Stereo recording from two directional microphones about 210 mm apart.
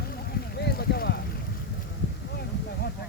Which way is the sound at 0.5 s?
50° left (ahead or behind).